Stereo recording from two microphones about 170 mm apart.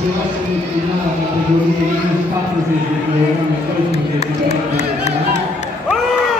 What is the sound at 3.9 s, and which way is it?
Speech, 40° left (ahead or behind).